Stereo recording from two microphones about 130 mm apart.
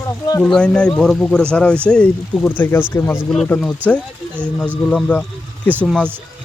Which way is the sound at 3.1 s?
Centre (ahead or behind).